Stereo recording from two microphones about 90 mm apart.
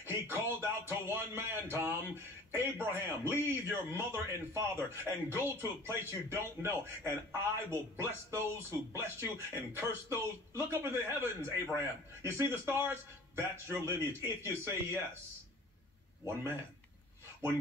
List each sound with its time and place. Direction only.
0.0 s speech: 25° right (ahead or behind)